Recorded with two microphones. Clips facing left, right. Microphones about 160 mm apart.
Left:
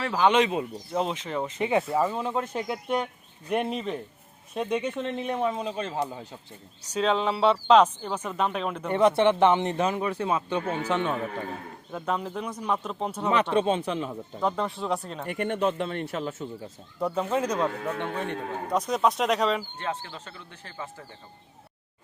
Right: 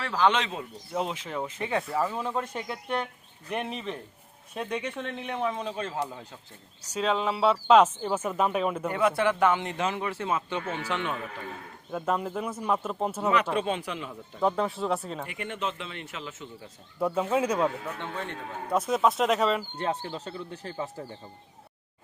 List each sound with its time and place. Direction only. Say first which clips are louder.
0.0 s speech: left 3 dB; 10° left (ahead or behind)
0.9 s speech: left 3 dB; 5° right (ahead or behind)
1.5 s speech: left 5 dB; 20° left (ahead or behind); by 8.9 s 5° right (ahead or behind)
8.9 s speech: left 7 dB; 30° left (ahead or behind)
11.9 s speech: right 1 dB; 5° right (ahead or behind)
13.6 s speech: left 5 dB; 25° left (ahead or behind)
14.4 s speech: right 2 dB; centre (ahead or behind)
15.3 s a man's voice: left 11 dB; 45° left (ahead or behind)
17.0 s speech: right 1 dB; 5° right (ahead or behind)
18.0 s speech: left 5 dB; 15° left (ahead or behind)
18.7 s speech: even; 5° right (ahead or behind)
19.7 s speech: right 3 dB; 35° right (ahead or behind)